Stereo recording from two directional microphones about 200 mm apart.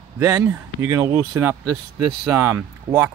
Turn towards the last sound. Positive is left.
turn(degrees=-10)  # may be behind; listen again after turning